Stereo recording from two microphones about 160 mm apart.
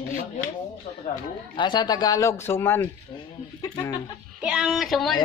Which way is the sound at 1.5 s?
30° left (ahead or behind).